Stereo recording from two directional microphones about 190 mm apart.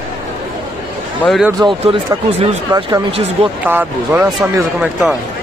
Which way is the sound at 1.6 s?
25° right (ahead or behind).